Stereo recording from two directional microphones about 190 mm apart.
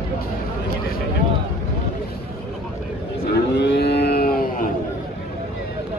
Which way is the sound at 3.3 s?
65° left (ahead or behind).